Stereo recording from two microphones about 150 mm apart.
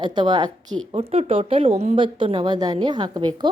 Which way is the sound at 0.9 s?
40° right (ahead or behind).